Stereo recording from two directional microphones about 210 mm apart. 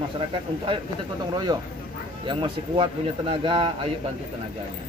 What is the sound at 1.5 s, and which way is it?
Speech, 20° right (ahead or behind).